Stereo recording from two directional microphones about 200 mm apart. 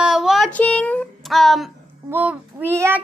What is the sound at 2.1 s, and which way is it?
Child singing, 10° right (ahead or behind).